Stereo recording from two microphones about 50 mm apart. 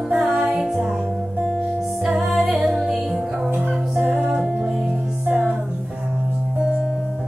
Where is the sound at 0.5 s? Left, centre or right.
Centre.